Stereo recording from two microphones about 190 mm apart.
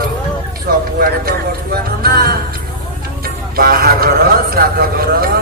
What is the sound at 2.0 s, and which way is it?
Music, 50° right (ahead or behind).